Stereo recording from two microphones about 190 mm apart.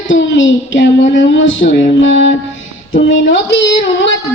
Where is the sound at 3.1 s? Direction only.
80° left.